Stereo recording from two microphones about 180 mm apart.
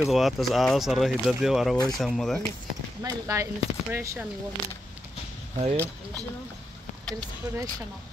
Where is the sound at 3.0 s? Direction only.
20° right (ahead or behind).